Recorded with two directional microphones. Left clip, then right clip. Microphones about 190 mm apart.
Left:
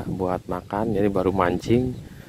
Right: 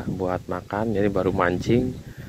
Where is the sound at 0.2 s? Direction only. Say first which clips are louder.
Left 1 dB; 15° left (ahead or behind).